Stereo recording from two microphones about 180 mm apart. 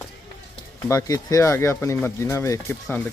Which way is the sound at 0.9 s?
20° left (ahead or behind).